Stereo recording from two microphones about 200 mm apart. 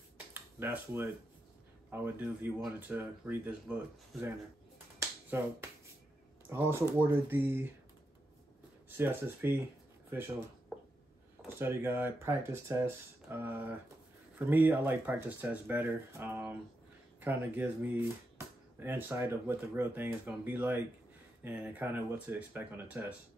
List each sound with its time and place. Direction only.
0.3 s a sound: 10° right (ahead or behind)
1.9 s speech: 10° right (ahead or behind)
4.9 s finger snapping: 10° right (ahead or behind)
6.5 s speech: 10° right (ahead or behind)
8.8 s speech: 10° right (ahead or behind)
11.5 s speech: 10° right (ahead or behind)